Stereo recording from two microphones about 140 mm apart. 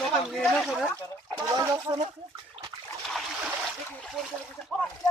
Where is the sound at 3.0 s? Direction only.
Centre (ahead or behind).